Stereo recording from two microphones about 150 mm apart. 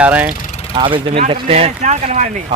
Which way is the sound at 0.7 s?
35° right (ahead or behind).